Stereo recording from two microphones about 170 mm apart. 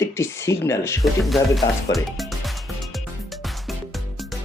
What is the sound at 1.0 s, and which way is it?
Speech, centre (ahead or behind).